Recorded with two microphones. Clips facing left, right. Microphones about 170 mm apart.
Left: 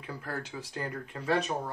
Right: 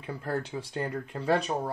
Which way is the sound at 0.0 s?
30° right (ahead or behind).